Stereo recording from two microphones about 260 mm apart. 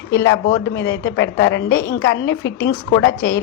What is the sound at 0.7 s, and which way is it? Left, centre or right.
A woman's voice, left.